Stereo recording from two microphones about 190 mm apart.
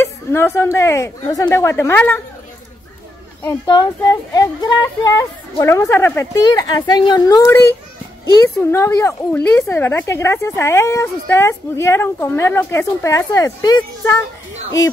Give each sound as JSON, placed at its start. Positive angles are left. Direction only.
{"t": 0.0, "sound": "a sound", "side_deg": 15}
{"t": 0.6, "sound": "speech", "side_deg": 15}
{"t": 3.4, "sound": "speech", "side_deg": 20}
{"t": 8.6, "sound": "speech", "side_deg": 15}